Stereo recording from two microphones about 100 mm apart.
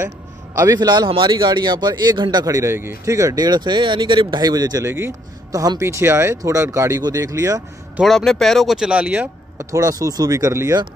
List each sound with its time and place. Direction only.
0.6 s a man's voice: 40° right (ahead or behind)
4.8 s speech: 25° right (ahead or behind)
8.0 s a man's voice: 5° left (ahead or behind)
8.7 s speech: 10° right (ahead or behind)
9.6 s speech: 35° right (ahead or behind)